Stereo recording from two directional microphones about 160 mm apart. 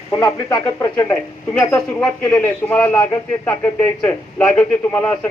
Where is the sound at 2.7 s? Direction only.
10° left (ahead or behind).